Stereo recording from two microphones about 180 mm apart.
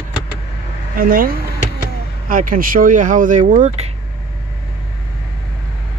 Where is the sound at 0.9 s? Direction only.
50° right (ahead or behind).